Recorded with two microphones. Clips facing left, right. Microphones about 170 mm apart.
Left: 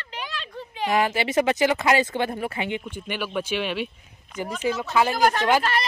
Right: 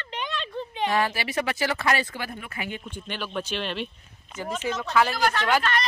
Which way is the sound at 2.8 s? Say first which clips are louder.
Left 4 dB; 10° left (ahead or behind).